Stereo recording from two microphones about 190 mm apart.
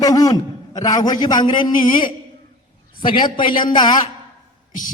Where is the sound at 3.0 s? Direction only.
25° left (ahead or behind).